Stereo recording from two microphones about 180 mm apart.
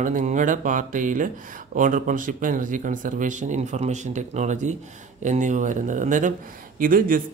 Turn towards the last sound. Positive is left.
turn(degrees=-50)  # may be behind; listen again after turning